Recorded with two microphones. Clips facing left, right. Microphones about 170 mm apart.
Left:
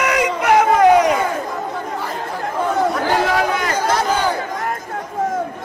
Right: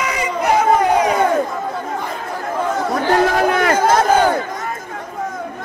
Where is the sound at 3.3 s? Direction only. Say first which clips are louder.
Right 4 dB; 55° right (ahead or behind).